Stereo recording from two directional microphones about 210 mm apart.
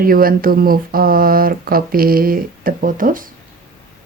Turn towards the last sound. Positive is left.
turn(degrees=-40)  # may be behind; listen again after turning